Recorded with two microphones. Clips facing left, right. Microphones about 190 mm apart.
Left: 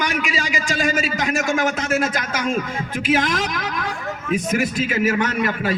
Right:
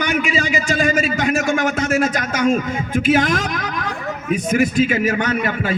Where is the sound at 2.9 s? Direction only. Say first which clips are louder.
Right 4 dB; 50° right (ahead or behind).